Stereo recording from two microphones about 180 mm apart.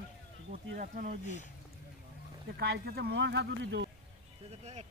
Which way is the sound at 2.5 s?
65° right (ahead or behind).